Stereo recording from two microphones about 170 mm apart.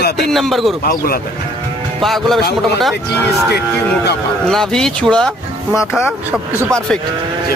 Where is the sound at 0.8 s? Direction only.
60° left (ahead or behind).